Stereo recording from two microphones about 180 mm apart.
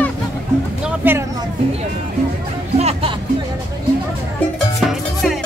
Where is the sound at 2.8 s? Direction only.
35° right (ahead or behind).